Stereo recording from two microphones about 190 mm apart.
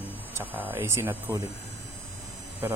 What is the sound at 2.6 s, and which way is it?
Speech, 15° right (ahead or behind).